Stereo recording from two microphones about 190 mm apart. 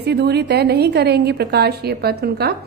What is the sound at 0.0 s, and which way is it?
A woman's voice, 60° right (ahead or behind).